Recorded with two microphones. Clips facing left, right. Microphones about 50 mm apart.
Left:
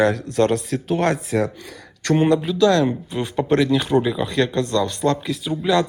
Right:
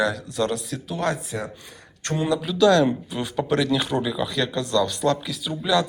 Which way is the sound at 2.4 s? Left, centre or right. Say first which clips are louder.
Left 1 dB; left.